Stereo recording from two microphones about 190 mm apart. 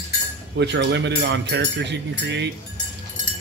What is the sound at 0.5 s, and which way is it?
Speech, 65° right (ahead or behind).